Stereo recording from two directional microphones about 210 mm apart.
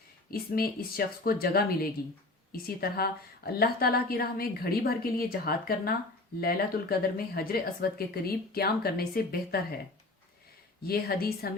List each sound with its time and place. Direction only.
0.3 s a woman's voice: 45° left (ahead or behind)
10.8 s a woman's voice: 45° left (ahead or behind)